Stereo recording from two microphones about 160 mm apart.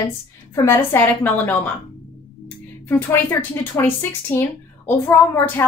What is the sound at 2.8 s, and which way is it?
Speech, 15° left (ahead or behind).